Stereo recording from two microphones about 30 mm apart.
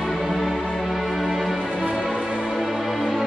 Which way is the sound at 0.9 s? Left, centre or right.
Centre.